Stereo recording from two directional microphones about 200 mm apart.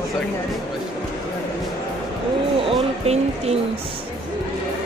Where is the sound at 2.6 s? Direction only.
30° right (ahead or behind).